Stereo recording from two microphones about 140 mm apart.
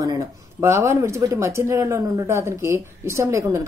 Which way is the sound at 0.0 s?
25° right (ahead or behind).